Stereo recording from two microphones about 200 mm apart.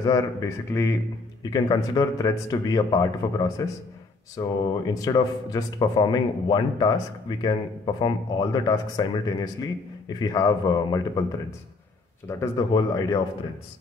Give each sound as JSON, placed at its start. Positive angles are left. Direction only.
{"t": 0.0, "sound": "a man's voice", "side_deg": 20}
{"t": 12.3, "sound": "a man's voice", "side_deg": 15}